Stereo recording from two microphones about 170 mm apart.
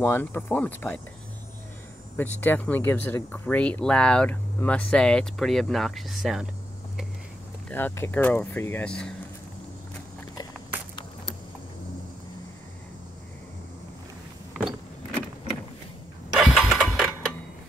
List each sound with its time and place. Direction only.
0.0 s speech: 10° left (ahead or behind)
2.1 s speech: 10° left (ahead or behind)
7.7 s speech: 15° left (ahead or behind)
16.3 s a sound: centre (ahead or behind)